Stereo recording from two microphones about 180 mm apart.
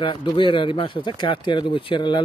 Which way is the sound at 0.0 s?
25° left (ahead or behind).